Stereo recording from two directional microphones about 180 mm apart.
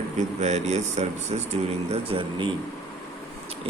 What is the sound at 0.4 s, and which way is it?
A man's voice, 40° right (ahead or behind).